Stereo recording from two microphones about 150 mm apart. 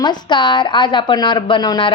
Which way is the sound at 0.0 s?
30° left (ahead or behind).